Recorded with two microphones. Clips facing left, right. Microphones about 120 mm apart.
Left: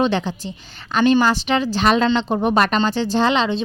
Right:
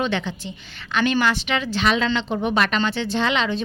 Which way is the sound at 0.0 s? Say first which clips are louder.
Left 5 dB; 35° left (ahead or behind).